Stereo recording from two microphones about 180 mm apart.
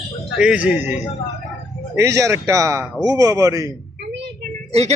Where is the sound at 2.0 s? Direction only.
15° right (ahead or behind).